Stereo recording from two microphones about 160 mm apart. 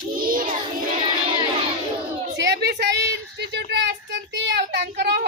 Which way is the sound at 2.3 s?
90° right.